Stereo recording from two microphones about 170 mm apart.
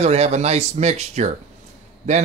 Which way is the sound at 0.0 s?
40° right (ahead or behind).